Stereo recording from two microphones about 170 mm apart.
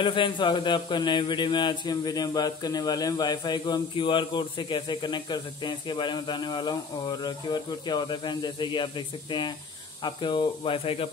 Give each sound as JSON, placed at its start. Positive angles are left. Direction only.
{"t": 0.0, "sound": "speech", "side_deg": 30}